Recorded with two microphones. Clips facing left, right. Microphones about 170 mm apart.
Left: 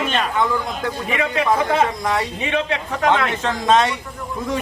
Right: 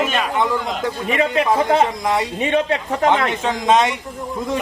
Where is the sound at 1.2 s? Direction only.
35° right (ahead or behind).